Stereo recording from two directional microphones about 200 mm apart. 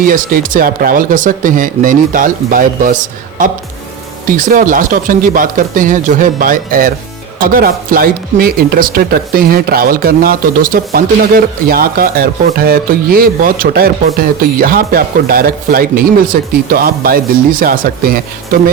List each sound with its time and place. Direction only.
0.0 s speech: 45° right (ahead or behind)